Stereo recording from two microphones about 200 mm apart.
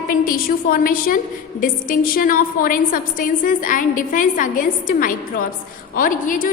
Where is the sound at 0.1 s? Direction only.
45° left (ahead or behind).